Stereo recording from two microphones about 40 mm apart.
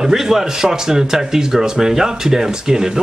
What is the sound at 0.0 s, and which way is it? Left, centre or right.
A man's voice, centre.